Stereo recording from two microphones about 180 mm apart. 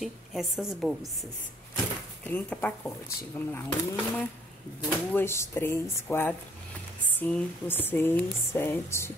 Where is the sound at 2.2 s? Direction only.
10° left (ahead or behind).